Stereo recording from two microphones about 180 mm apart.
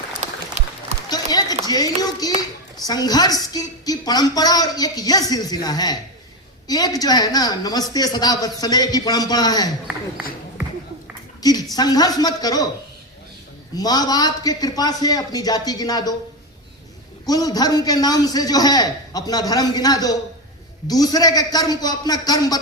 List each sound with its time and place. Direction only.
0.2 s a sound: 40° right (ahead or behind)
1.1 s a woman's voice: 20° left (ahead or behind)
11.4 s speech: 20° left (ahead or behind)
13.7 s a woman's voice: 20° left (ahead or behind)
17.2 s a woman's voice: 20° left (ahead or behind)